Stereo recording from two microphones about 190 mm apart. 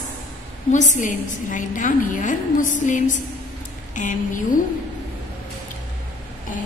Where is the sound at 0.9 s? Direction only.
40° left (ahead or behind).